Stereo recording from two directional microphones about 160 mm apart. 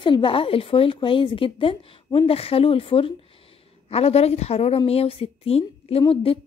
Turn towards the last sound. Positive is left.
turn(degrees=35)  # may be behind; listen again after turning